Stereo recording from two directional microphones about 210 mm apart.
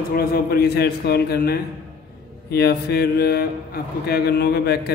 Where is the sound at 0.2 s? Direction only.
45° left (ahead or behind).